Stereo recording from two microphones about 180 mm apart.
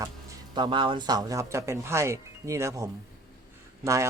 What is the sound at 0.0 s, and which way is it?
Speech, 20° right (ahead or behind).